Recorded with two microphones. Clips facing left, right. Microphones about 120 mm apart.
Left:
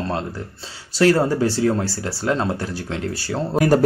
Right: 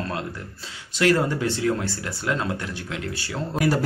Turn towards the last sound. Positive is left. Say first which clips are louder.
# left 6 dB
turn(degrees=35)  # may be behind; listen again after turning